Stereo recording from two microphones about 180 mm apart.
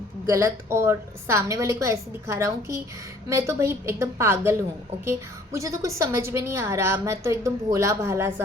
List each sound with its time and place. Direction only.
0.3 s a woman's voice: 15° right (ahead or behind)